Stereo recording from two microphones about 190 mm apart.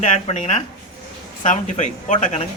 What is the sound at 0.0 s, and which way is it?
Speech, 35° left (ahead or behind).